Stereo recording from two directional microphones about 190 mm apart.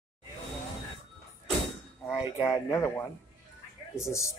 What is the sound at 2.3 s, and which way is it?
Speech, 15° left (ahead or behind).